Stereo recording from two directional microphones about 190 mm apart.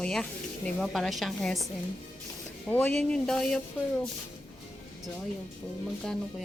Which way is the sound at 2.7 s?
5° left (ahead or behind).